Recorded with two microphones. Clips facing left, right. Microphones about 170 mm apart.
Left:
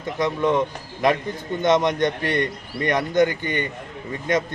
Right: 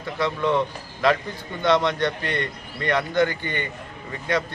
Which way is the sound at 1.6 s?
20° left (ahead or behind).